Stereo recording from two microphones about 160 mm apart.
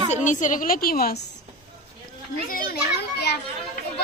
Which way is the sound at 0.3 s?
50° left (ahead or behind).